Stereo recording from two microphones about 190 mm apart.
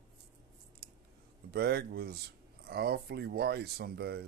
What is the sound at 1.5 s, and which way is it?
Speech, 55° right (ahead or behind).